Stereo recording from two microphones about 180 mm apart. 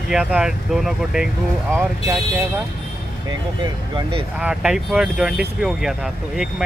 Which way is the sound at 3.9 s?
30° right (ahead or behind).